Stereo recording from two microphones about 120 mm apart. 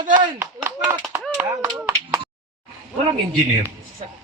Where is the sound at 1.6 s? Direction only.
25° right (ahead or behind).